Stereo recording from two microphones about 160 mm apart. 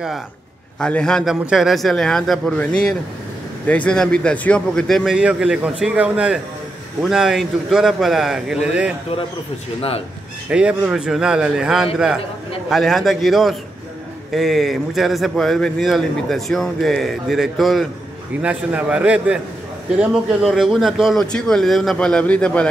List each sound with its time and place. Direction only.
0.7 s a man's voice: 5° left (ahead or behind)
9.8 s speech: 35° left (ahead or behind)
10.5 s a man's voice: 5° right (ahead or behind)